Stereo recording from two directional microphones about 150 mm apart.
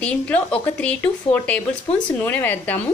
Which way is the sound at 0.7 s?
10° left (ahead or behind).